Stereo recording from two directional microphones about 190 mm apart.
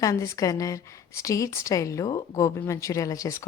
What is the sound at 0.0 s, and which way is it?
Speech, 15° left (ahead or behind).